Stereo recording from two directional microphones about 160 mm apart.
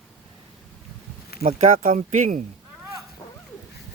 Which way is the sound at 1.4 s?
55° right (ahead or behind).